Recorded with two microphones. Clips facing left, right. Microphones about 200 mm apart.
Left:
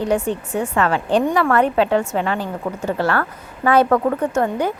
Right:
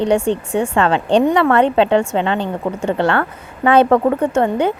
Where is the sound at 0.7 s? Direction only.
25° right (ahead or behind).